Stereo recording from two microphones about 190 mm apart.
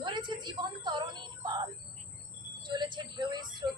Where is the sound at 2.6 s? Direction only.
25° right (ahead or behind).